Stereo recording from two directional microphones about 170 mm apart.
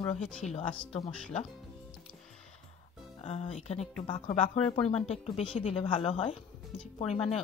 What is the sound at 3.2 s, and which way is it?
Speech, 40° left (ahead or behind).